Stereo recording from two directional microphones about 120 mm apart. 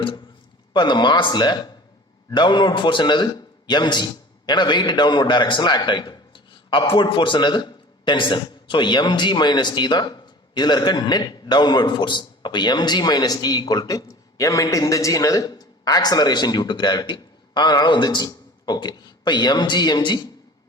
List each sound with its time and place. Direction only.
0.7 s a man's voice: 40° left (ahead or behind)